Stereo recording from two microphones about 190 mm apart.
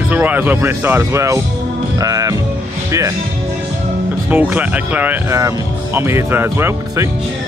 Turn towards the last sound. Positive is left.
turn(degrees=-15)  # may be behind; listen again after turning